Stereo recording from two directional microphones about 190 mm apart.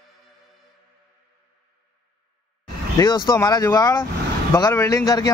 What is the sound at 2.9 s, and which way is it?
Speech, 20° left (ahead or behind).